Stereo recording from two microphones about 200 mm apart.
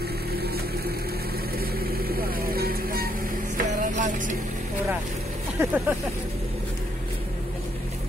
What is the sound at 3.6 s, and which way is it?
Music, 40° right (ahead or behind).